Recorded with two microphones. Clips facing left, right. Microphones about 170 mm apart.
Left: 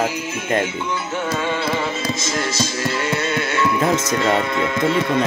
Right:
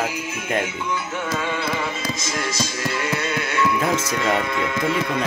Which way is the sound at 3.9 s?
35° left (ahead or behind).